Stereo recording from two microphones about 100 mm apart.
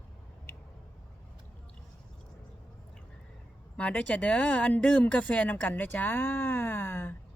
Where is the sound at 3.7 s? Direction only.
10° left (ahead or behind).